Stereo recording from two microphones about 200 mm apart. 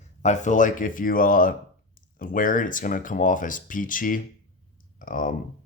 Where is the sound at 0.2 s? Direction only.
35° left (ahead or behind).